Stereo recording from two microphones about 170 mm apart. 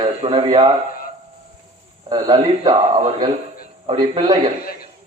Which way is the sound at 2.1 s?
30° right (ahead or behind).